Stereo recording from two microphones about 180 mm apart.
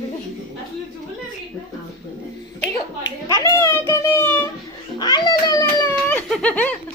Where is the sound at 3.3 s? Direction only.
15° left (ahead or behind).